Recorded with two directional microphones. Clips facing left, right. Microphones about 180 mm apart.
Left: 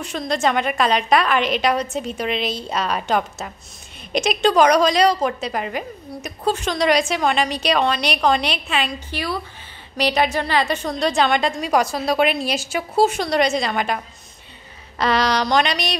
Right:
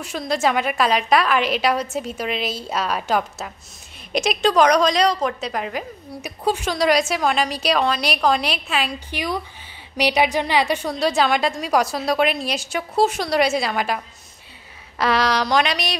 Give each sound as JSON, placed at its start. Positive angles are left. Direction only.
{"t": 0.0, "sound": "a woman's voice", "side_deg": -5}
{"t": 9.1, "sound": "a woman's voice", "side_deg": -15}